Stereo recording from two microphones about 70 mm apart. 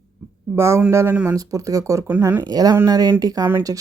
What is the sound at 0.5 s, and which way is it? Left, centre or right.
Speech, right.